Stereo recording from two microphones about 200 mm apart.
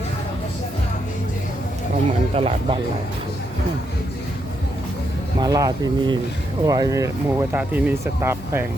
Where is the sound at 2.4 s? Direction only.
30° right (ahead or behind).